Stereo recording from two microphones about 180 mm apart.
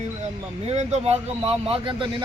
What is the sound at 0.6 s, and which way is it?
Speech, 35° right (ahead or behind).